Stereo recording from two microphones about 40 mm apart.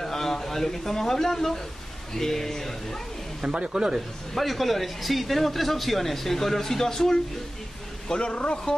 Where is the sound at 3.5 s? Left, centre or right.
Centre.